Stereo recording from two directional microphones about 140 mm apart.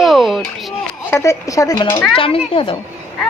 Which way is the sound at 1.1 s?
20° left (ahead or behind).